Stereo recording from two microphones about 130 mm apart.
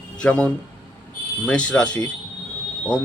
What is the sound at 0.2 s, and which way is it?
A man's voice, 10° left (ahead or behind).